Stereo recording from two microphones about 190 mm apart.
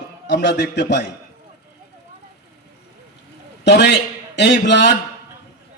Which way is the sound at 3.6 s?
65° left (ahead or behind).